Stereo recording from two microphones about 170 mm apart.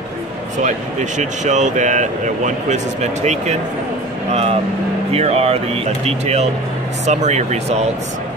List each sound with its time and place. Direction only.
0.7 s speech: 45° right (ahead or behind)